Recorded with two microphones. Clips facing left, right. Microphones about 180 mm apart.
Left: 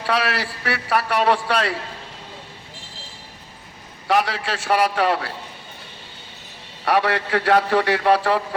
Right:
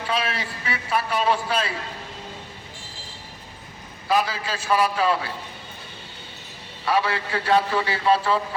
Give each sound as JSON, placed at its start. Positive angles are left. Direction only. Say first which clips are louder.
{"t": 0.0, "sound": "a man's voice", "louder": "left 4 dB", "side_deg": 75}
{"t": 4.1, "sound": "a man's voice", "louder": "left 2 dB", "side_deg": 75}
{"t": 6.8, "sound": "a man's voice", "louder": "left 3 dB", "side_deg": 70}